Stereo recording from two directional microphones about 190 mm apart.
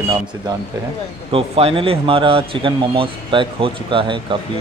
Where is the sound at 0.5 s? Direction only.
25° right (ahead or behind).